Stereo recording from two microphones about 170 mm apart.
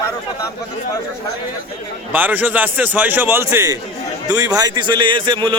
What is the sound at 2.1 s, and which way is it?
A man's voice, 10° right (ahead or behind).